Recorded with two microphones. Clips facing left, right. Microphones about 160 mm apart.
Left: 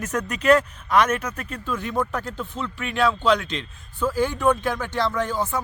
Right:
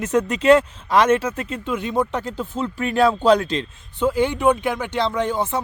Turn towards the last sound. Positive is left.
turn(degrees=-20)  # may be behind; listen again after turning